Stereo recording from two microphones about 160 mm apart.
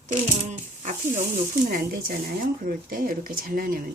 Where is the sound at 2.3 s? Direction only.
65° right (ahead or behind).